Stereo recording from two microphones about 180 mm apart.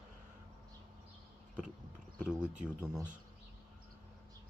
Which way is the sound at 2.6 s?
10° right (ahead or behind).